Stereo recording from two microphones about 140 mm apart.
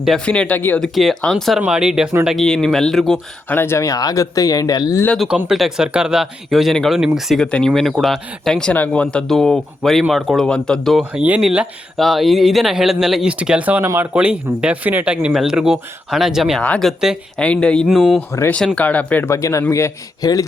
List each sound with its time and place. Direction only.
0.0 s speech: 5° left (ahead or behind)
0.9 s speech: centre (ahead or behind)
3.5 s speech: 15° left (ahead or behind)
5.0 s speech: centre (ahead or behind)
16.6 s speech: 10° left (ahead or behind)
17.0 s speech: 5° right (ahead or behind)
17.4 s speech: 10° left (ahead or behind)
17.8 s speech: 5° right (ahead or behind)
18.3 s speech: 20° left (ahead or behind)
18.5 s speech: 10° left (ahead or behind); by 20.4 s 25° left (ahead or behind)